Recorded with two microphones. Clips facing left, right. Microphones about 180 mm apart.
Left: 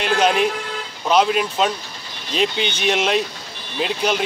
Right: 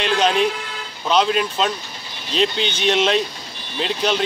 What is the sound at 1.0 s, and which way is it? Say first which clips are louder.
A man's voice: left 1 dB; 5° left (ahead or behind).